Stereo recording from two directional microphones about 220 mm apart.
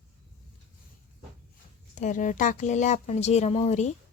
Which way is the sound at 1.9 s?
35° left (ahead or behind).